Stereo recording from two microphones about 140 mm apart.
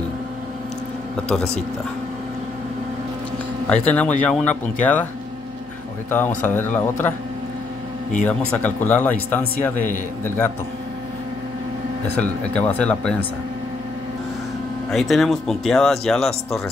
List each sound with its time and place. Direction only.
3.6 s speech: 10° left (ahead or behind)
6.0 s speech: 15° left (ahead or behind)
8.3 s speech: 10° left (ahead or behind)
12.2 s speech: 10° left (ahead or behind)
14.9 s speech: centre (ahead or behind)